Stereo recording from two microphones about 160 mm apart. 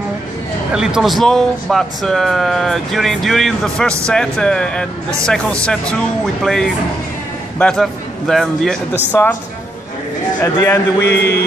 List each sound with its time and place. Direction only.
0.7 s a man's voice: 5° right (ahead or behind)
10.4 s speech: 15° left (ahead or behind)
11.0 s a man's voice: 90° left